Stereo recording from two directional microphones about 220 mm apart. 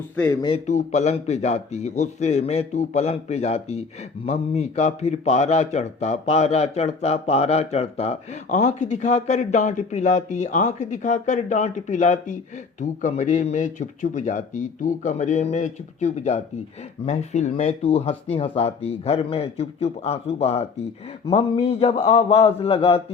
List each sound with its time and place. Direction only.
0.4 s speech: 30° left (ahead or behind)